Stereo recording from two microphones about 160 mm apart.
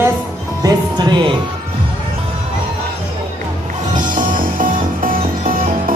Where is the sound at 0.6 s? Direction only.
25° right (ahead or behind).